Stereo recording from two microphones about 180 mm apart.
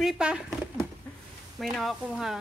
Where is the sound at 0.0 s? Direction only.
5° right (ahead or behind).